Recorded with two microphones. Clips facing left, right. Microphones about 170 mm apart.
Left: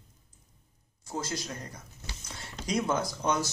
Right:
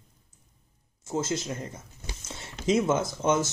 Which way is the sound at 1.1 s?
20° right (ahead or behind).